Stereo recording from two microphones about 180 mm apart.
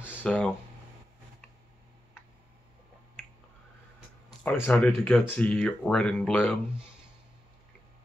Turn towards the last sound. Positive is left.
turn(degrees=5)  # may be behind; listen again after turning